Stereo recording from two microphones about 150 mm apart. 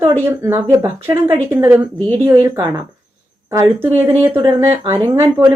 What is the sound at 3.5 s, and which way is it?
Speech, 15° right (ahead or behind).